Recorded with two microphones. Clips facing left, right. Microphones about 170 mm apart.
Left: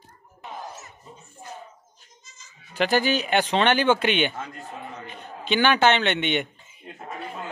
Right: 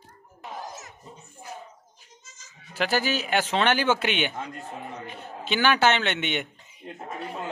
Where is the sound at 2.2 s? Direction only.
90° right.